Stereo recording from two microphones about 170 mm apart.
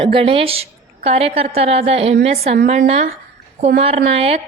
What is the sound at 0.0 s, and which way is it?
A woman's voice, 35° right (ahead or behind).